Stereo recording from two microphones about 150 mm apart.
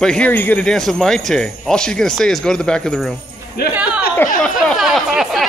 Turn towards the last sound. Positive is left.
turn(degrees=0)  # may be behind; listen again after turning